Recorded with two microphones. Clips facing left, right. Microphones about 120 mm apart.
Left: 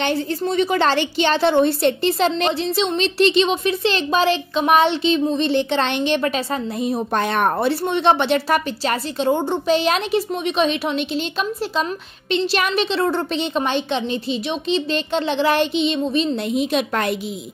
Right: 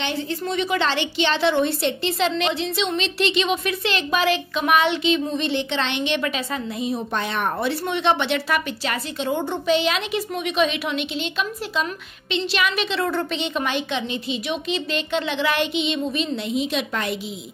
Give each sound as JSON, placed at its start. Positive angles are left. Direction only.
{"t": 0.0, "sound": "a woman's voice", "side_deg": 40}
{"t": 7.5, "sound": "a woman's voice", "side_deg": 35}
{"t": 16.5, "sound": "a woman's voice", "side_deg": 55}